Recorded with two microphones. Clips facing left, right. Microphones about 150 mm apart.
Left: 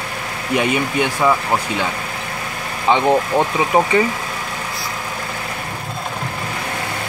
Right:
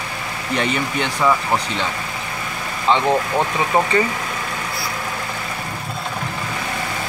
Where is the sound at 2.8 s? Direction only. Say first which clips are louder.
Left 2 dB; 15° left (ahead or behind).